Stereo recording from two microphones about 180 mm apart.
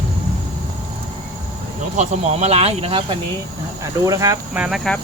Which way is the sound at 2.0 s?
40° right (ahead or behind).